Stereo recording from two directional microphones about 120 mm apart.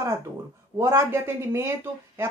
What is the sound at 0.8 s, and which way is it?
Speech, 20° right (ahead or behind).